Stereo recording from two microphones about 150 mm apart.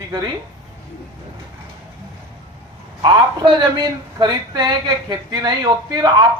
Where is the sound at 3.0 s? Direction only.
30° right (ahead or behind).